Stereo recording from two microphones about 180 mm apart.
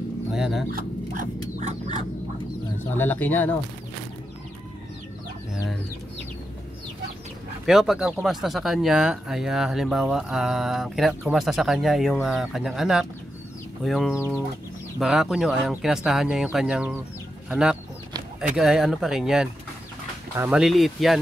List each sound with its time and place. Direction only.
0.3 s speech: centre (ahead or behind)
0.7 s a sound: 45° right (ahead or behind)
3.0 s speech: 10° left (ahead or behind)
7.6 s speech: centre (ahead or behind)